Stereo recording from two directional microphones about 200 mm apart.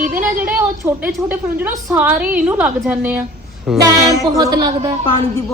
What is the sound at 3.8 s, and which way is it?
Music, 20° right (ahead or behind).